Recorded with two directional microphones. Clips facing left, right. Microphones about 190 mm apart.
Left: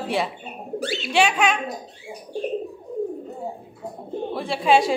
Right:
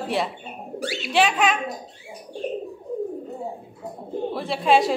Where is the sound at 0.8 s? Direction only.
10° right (ahead or behind).